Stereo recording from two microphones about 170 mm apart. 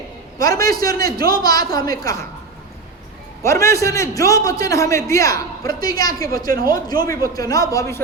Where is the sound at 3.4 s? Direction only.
15° left (ahead or behind).